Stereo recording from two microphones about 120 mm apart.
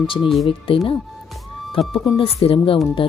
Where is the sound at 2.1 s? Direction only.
55° left (ahead or behind).